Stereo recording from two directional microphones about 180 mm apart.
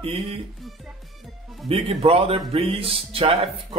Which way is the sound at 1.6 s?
30° right (ahead or behind).